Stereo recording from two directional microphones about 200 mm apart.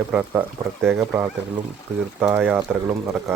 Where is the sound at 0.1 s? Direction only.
10° right (ahead or behind).